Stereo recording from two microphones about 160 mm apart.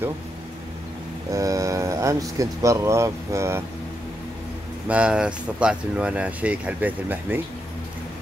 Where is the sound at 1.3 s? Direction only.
20° right (ahead or behind).